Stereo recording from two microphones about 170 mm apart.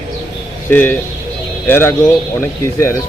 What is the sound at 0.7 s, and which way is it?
Speech, 10° left (ahead or behind).